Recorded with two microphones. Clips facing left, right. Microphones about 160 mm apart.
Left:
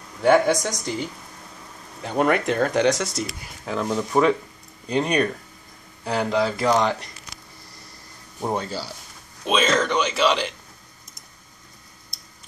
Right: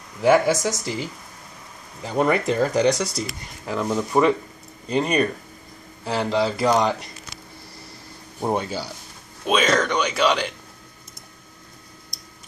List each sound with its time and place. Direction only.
0.2 s speech: 5° right (ahead or behind)
8.4 s speech: 10° right (ahead or behind)